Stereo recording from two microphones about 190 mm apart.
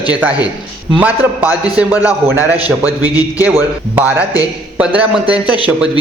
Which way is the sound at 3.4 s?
10° right (ahead or behind).